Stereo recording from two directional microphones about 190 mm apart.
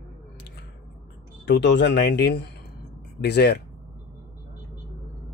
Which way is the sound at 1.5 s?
65° left (ahead or behind).